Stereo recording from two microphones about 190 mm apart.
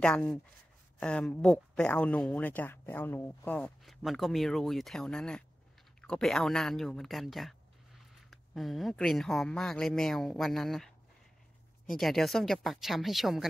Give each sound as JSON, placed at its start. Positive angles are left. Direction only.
{"t": 0.0, "sound": "speech", "side_deg": 5}
{"t": 11.9, "sound": "speech", "side_deg": 0}